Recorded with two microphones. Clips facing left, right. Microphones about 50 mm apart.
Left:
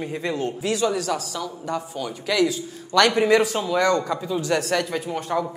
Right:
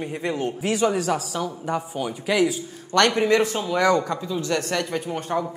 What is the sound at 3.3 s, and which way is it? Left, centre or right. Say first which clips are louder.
Speech: left 1 dB; centre.